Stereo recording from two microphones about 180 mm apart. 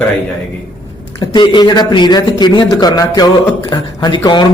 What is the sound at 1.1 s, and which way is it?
A man's voice, 25° left (ahead or behind).